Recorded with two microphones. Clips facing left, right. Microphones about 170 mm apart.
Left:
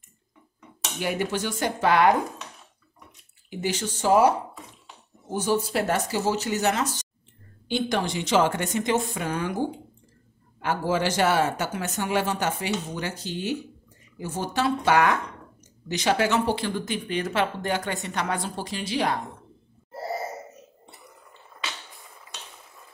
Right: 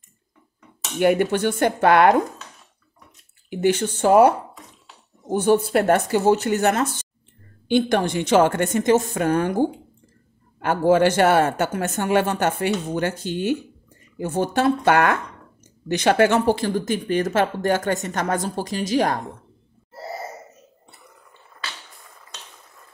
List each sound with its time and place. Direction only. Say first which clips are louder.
0.9 s a man's voice: right 9 dB; 55° right (ahead or behind)
3.4 s a man's voice: right 9 dB; 55° right (ahead or behind)
10.6 s a man's voice: right 8 dB; 55° right (ahead or behind)